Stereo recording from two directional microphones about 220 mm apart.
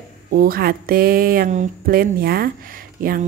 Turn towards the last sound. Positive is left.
turn(degrees=-40)  # may be behind; listen again after turning